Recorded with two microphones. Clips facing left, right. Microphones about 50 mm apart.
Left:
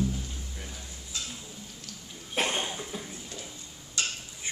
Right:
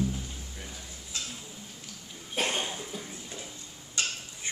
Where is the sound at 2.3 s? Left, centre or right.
Left.